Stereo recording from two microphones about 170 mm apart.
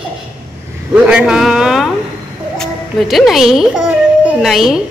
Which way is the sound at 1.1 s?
5° right (ahead or behind).